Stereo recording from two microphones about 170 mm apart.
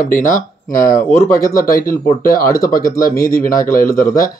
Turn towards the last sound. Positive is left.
turn(degrees=55)  # may be behind; listen again after turning